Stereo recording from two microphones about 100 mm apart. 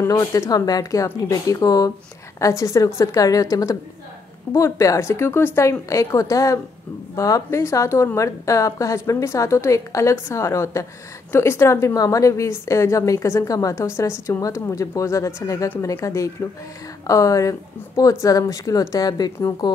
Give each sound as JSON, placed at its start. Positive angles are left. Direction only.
{"t": 0.0, "sound": "a woman's voice", "side_deg": 30}